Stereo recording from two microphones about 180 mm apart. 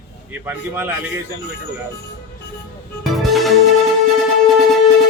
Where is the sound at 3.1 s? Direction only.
Centre (ahead or behind).